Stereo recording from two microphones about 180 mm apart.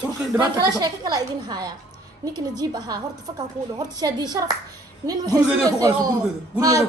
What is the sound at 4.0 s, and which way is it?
A woman's voice, 20° right (ahead or behind).